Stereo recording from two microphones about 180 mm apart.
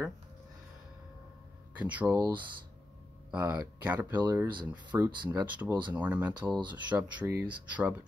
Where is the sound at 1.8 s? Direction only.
10° right (ahead or behind).